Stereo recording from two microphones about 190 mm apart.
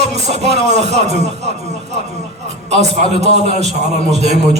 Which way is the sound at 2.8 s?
35° right (ahead or behind).